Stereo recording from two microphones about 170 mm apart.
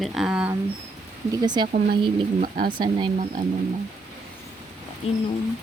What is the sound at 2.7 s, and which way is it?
Speech, 25° right (ahead or behind).